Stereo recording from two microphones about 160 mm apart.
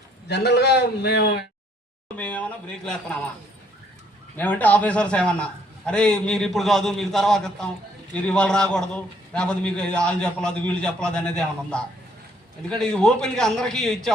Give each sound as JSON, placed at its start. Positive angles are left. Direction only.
{"t": 0.3, "sound": "a man's voice", "side_deg": 90}
{"t": 2.1, "sound": "speech", "side_deg": 10}
{"t": 4.4, "sound": "a man's voice", "side_deg": 10}